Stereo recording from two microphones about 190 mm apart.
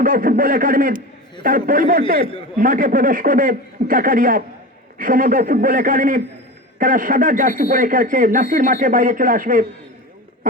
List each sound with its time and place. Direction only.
0.0 s a man's voice: 50° right (ahead or behind)